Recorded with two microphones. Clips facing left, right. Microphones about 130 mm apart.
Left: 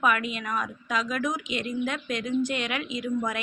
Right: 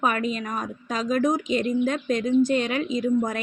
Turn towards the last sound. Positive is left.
turn(degrees=-35)  # may be behind; listen again after turning